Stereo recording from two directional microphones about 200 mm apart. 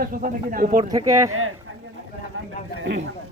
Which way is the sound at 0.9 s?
15° right (ahead or behind).